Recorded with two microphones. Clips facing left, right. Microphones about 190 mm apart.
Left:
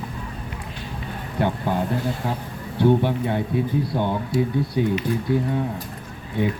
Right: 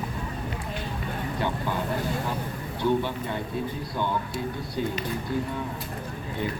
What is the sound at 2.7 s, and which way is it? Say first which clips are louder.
Speech: left 7 dB; 60° left (ahead or behind).